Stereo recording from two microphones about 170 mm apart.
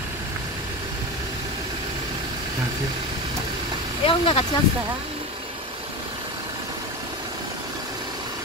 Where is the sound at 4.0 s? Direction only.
30° left (ahead or behind).